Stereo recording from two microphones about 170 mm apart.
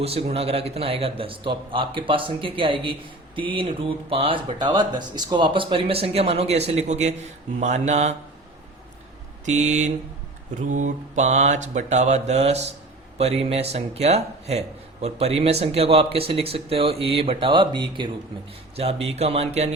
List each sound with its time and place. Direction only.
0.0 s speech: 35° right (ahead or behind)
9.5 s mantra: 45° right (ahead or behind)
13.1 s speech: 40° right (ahead or behind)